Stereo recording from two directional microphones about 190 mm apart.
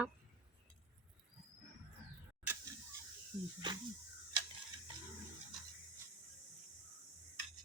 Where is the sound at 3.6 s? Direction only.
25° right (ahead or behind).